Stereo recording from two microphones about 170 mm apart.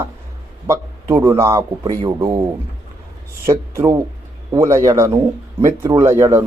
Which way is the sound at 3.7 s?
15° right (ahead or behind).